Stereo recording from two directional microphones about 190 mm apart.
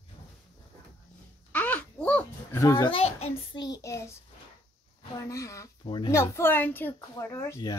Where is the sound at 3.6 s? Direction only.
15° left (ahead or behind).